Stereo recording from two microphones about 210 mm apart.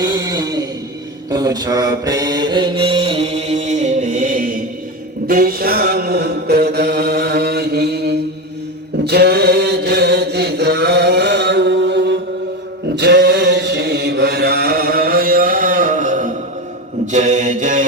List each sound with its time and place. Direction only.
0.0 s a sound: 15° right (ahead or behind)
1.3 s mantra: 20° right (ahead or behind); by 8.2 s 50° right (ahead or behind)
9.0 s chant: 50° right (ahead or behind)
17.1 s mantra: 35° right (ahead or behind)